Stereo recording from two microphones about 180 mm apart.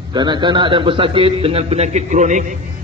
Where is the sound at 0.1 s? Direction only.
25° right (ahead or behind); by 2.4 s 40° right (ahead or behind).